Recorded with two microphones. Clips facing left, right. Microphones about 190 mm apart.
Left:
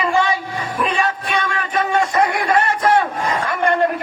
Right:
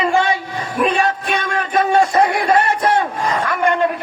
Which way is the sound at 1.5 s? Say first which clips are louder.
Right 6 dB; 35° right (ahead or behind).